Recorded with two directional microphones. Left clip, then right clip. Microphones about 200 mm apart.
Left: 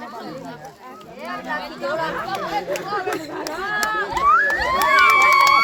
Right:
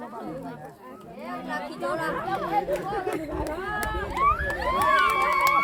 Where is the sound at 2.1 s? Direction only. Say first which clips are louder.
Left 2 dB; 15° left (ahead or behind).